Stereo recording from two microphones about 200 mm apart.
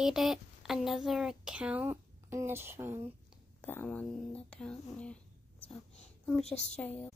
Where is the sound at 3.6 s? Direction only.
5° left (ahead or behind).